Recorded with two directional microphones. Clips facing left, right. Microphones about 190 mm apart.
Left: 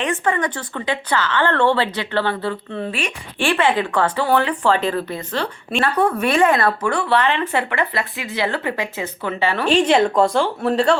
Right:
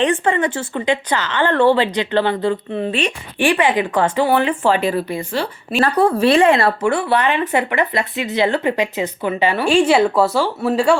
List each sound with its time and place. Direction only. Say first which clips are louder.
0.0 s speech: right 4 dB; 30° right (ahead or behind); by 5.8 s 10° right (ahead or behind)
5.8 s a woman's voice: right 4 dB; 30° right (ahead or behind)
7.1 s speech: right 2 dB; 10° right (ahead or behind)